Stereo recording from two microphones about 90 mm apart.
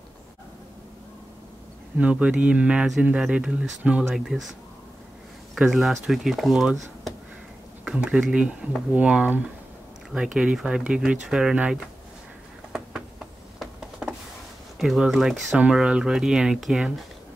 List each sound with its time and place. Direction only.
2.0 s speech: 15° right (ahead or behind)
13.6 s a sound: 10° right (ahead or behind)
14.8 s speech: 5° right (ahead or behind)